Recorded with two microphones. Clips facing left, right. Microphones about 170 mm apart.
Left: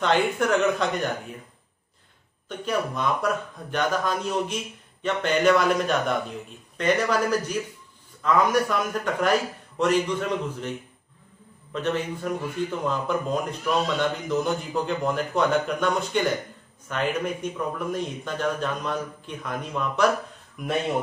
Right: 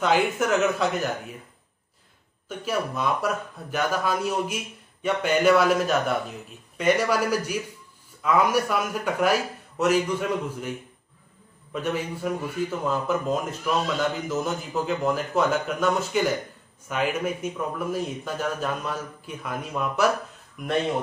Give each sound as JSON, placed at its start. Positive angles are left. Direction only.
{"t": 0.0, "sound": "a man's voice", "side_deg": -5}
{"t": 2.4, "sound": "a man's voice", "side_deg": -5}
{"t": 11.7, "sound": "a man's voice", "side_deg": -10}